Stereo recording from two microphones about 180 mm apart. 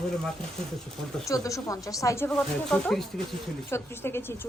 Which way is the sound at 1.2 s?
20° left (ahead or behind).